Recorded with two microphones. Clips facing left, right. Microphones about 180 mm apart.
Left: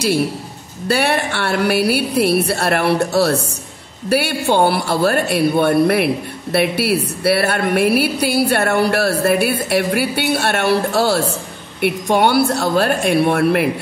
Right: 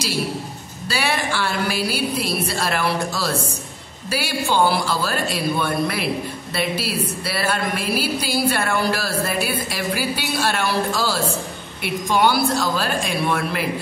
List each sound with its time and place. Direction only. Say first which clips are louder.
0.8 s speech: left 6 dB; 60° left (ahead or behind)